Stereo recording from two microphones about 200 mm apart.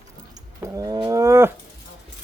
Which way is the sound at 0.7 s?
20° right (ahead or behind).